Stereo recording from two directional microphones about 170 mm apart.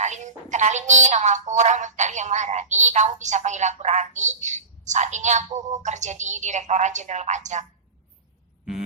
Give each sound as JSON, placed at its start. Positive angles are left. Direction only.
{"t": 0.0, "sound": "a woman's voice", "side_deg": -45}